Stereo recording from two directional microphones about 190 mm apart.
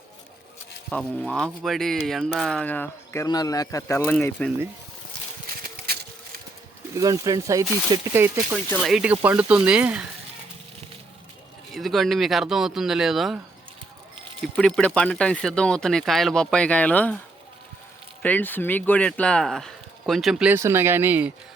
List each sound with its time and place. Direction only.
0.9 s speech: 5° left (ahead or behind)
5.6 s a sound: 55° right (ahead or behind)
6.9 s speech: 20° right (ahead or behind)
8.7 s speech: centre (ahead or behind)
11.7 s speech: centre (ahead or behind)
14.4 s speech: 5° left (ahead or behind)
18.2 s speech: 10° left (ahead or behind); by 21.3 s 10° right (ahead or behind)